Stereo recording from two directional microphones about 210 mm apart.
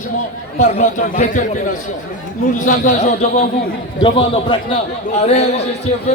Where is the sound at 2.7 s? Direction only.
35° left (ahead or behind).